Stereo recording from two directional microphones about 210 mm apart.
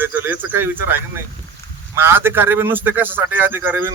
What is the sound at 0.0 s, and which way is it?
Speech, 10° right (ahead or behind).